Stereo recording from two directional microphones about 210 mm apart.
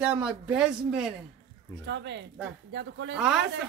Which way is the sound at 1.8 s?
55° right (ahead or behind).